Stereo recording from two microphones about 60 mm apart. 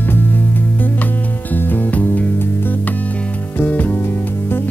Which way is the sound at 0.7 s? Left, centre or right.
Left.